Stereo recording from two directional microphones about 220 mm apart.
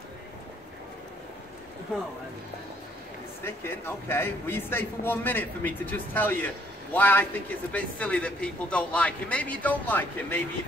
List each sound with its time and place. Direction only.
3.4 s a man's voice: 10° left (ahead or behind)